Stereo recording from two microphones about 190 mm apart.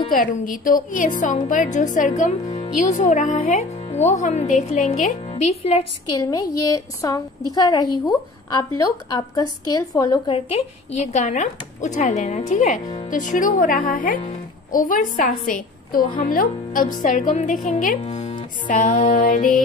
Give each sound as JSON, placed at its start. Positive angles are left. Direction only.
{"t": 0.1, "sound": "a woman's voice", "side_deg": 45}
{"t": 2.4, "sound": "speech", "side_deg": 30}
{"t": 6.7, "sound": "speech", "side_deg": 20}
{"t": 10.3, "sound": "speech", "side_deg": 35}
{"t": 12.8, "sound": "speech", "side_deg": 30}
{"t": 13.1, "sound": "a woman's voice", "side_deg": 45}